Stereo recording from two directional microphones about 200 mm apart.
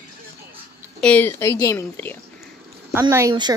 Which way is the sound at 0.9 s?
5° left (ahead or behind).